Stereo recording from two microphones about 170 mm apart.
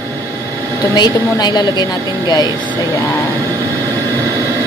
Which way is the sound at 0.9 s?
25° left (ahead or behind).